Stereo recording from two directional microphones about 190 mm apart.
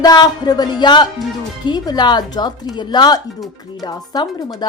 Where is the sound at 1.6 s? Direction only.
20° left (ahead or behind).